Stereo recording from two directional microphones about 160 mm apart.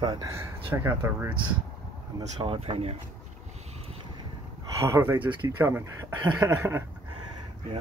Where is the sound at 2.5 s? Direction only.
40° right (ahead or behind).